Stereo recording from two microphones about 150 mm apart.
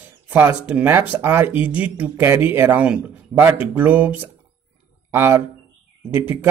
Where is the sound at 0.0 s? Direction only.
15° right (ahead or behind).